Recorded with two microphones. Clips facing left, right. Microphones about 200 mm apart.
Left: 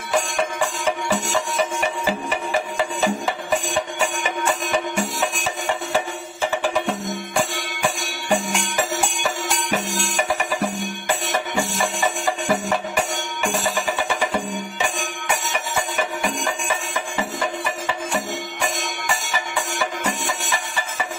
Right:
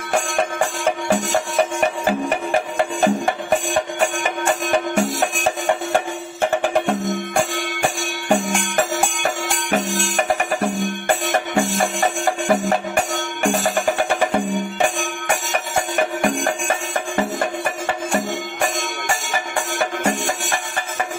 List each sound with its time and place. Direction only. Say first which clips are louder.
0.1 s music: right 1 dB; 55° right (ahead or behind)